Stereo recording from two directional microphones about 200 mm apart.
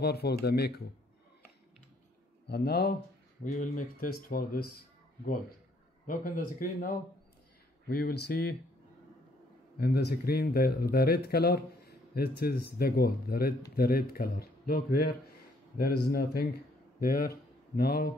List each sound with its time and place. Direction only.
0.0 s speech: 55° left (ahead or behind)
2.4 s speech: 55° left (ahead or behind)
3.5 s speech: 45° left (ahead or behind)
6.0 s speech: 45° left (ahead or behind)
9.8 s speech: 55° left (ahead or behind)